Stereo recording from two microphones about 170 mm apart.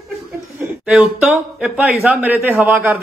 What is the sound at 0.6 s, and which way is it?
Speech, 10° right (ahead or behind).